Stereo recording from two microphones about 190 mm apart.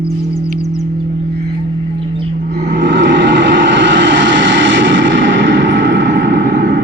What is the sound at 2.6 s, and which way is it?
Vehicle, 65° right (ahead or behind).